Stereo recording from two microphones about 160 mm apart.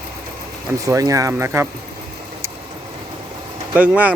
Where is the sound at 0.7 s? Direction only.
20° right (ahead or behind).